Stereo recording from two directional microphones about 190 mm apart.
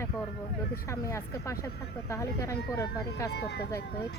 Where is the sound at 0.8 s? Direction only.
15° left (ahead or behind).